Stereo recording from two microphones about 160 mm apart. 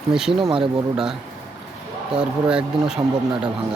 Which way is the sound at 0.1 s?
5° right (ahead or behind).